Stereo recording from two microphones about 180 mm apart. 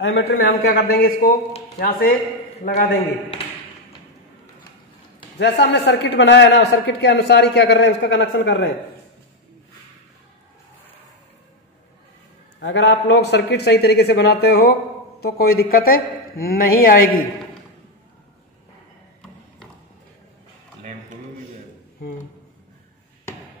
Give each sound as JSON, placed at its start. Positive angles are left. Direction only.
{"t": 0.0, "sound": "a man's voice", "side_deg": 65}
{"t": 5.4, "sound": "a man's voice", "side_deg": 70}
{"t": 12.5, "sound": "a man's voice", "side_deg": 90}